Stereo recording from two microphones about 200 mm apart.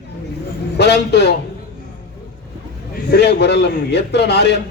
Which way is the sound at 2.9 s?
55° left (ahead or behind).